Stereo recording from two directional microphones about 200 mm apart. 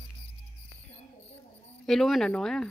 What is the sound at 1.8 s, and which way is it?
Speech, centre (ahead or behind).